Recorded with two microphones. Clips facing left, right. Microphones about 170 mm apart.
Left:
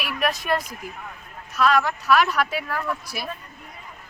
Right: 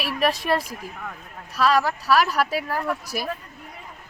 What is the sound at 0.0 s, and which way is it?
Speech, 30° right (ahead or behind).